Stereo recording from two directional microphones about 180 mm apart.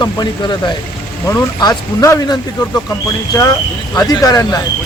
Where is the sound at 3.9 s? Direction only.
20° left (ahead or behind).